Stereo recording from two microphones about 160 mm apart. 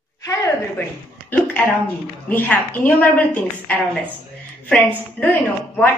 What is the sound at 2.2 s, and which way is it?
A woman's voice, 10° left (ahead or behind).